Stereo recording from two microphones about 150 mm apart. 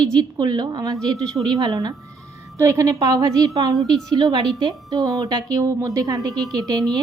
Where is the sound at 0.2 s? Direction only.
30° right (ahead or behind).